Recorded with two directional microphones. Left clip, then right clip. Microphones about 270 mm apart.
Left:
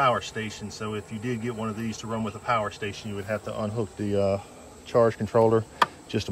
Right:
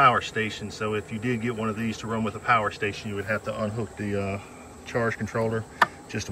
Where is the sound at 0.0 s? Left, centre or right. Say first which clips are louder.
Right 4 dB; centre.